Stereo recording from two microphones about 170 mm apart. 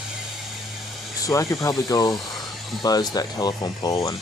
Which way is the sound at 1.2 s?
20° left (ahead or behind).